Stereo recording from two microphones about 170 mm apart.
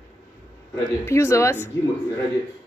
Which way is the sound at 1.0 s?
15° left (ahead or behind).